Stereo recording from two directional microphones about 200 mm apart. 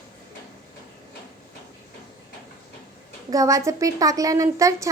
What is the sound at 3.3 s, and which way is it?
A woman's voice, 15° right (ahead or behind).